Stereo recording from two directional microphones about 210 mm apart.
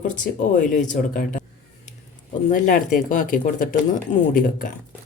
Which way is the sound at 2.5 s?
40° left (ahead or behind).